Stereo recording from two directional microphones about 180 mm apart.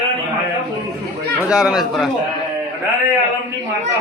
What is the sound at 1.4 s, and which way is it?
Speech, 5° right (ahead or behind).